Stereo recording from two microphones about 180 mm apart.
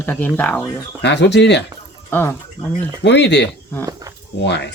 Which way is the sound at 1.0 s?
75° left (ahead or behind).